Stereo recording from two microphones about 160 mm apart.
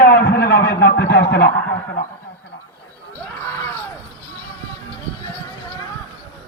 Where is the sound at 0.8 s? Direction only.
90° left.